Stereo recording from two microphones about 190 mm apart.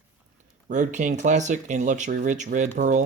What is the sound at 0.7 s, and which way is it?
Speech, 40° right (ahead or behind).